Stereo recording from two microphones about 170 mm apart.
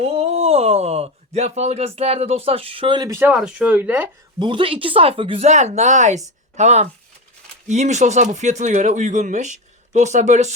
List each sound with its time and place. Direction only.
0.0 s speech: 40° right (ahead or behind)
3.2 s speech: 5° right (ahead or behind)
4.4 s speech: 30° right (ahead or behind)